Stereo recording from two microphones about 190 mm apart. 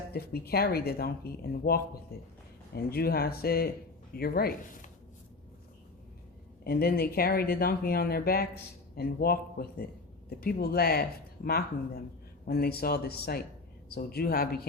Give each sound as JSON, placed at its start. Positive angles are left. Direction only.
{"t": 0.1, "sound": "speech", "side_deg": 55}
{"t": 6.7, "sound": "speech", "side_deg": 55}